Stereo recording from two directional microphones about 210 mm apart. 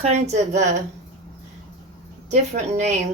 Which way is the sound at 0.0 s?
30° right (ahead or behind).